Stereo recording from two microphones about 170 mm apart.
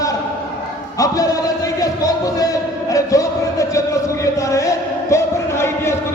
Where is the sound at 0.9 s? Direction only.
20° left (ahead or behind).